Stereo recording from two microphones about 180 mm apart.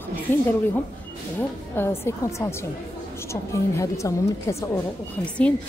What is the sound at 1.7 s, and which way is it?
Speech, 15° left (ahead or behind).